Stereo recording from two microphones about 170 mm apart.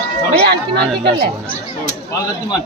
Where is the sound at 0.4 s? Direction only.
70° right (ahead or behind).